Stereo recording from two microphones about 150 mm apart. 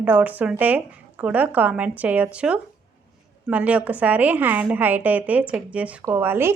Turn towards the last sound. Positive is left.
turn(degrees=-15)  # may be behind; listen again after turning